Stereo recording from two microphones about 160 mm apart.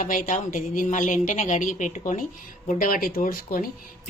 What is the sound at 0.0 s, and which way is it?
A woman's voice, 55° left (ahead or behind).